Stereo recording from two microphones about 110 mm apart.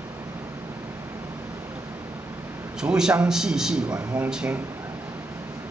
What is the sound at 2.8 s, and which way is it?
A man's voice, 5° right (ahead or behind).